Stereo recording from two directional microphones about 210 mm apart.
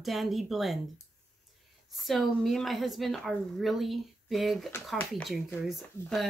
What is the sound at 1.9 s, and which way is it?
Speech, centre (ahead or behind).